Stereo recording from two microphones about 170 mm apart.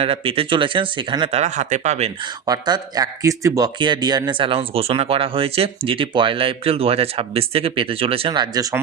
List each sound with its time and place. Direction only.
0.0 s speech: 35° right (ahead or behind)
2.5 s speech: 25° right (ahead or behind)